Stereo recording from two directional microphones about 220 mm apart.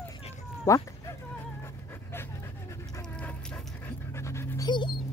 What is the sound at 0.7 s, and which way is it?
Speech, 15° left (ahead or behind).